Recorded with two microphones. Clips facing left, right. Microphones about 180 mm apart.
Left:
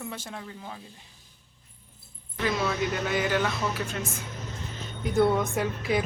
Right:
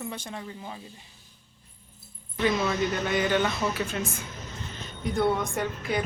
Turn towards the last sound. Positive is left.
turn(degrees=0)  # may be behind; listen again after turning